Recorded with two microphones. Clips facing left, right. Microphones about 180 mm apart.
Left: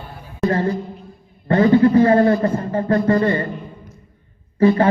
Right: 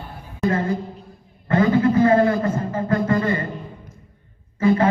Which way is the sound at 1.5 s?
30° left (ahead or behind).